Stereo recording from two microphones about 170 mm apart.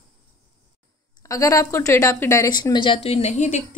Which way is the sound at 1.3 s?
20° left (ahead or behind).